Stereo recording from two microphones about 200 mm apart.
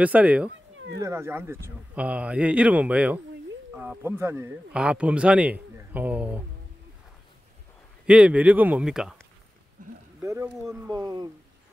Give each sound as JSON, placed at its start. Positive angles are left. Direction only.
{"t": 0.0, "sound": "speech", "side_deg": -5}
{"t": 8.1, "sound": "speech", "side_deg": -5}
{"t": 9.8, "sound": "a sound", "side_deg": -40}
{"t": 10.2, "sound": "speech", "side_deg": -15}